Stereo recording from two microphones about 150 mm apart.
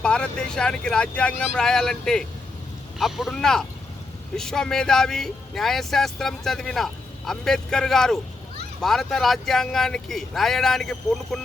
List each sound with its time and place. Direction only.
0.0 s speech: 5° left (ahead or behind)